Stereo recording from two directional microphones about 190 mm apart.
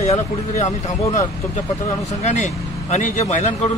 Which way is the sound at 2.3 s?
40° left (ahead or behind).